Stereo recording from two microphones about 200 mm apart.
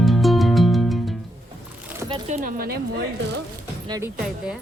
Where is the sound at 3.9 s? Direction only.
15° right (ahead or behind).